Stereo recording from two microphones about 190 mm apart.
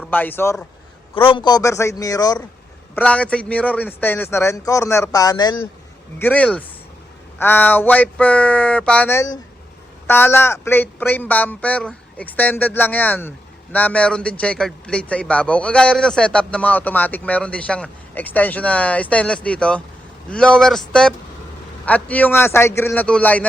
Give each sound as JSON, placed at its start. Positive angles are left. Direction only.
{"t": 0.1, "sound": "a man's voice", "side_deg": 10}
{"t": 1.1, "sound": "a man's voice", "side_deg": 30}
{"t": 2.9, "sound": "a man's voice", "side_deg": 5}
{"t": 6.1, "sound": "a man's voice", "side_deg": 10}